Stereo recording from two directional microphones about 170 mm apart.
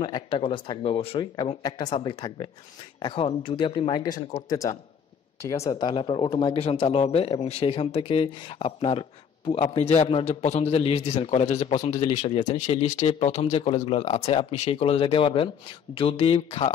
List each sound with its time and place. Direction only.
0.0 s speech: 30° left (ahead or behind)
12.5 s speech: 45° left (ahead or behind)